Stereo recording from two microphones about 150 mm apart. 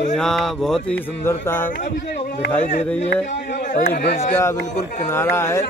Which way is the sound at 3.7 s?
85° left.